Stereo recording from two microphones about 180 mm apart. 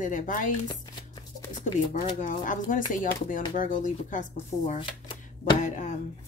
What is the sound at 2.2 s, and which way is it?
A woman's voice, 45° left (ahead or behind).